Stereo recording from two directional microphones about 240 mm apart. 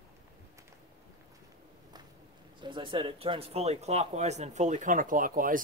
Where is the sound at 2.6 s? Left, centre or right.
Centre.